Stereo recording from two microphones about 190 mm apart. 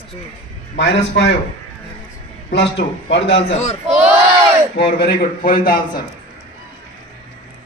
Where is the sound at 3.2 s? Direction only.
30° left (ahead or behind).